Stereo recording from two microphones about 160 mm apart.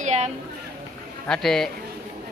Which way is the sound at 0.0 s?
45° right (ahead or behind).